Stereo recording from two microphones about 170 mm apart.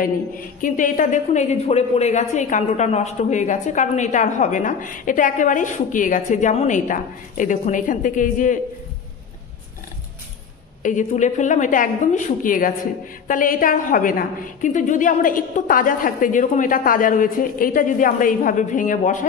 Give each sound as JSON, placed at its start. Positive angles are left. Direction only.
{"t": 0.0, "sound": "a woman's voice", "side_deg": 55}
{"t": 10.8, "sound": "a woman's voice", "side_deg": 45}